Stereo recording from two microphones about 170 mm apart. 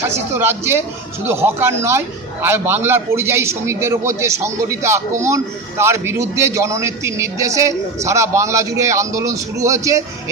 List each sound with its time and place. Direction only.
0.0 s a man's voice: 15° right (ahead or behind)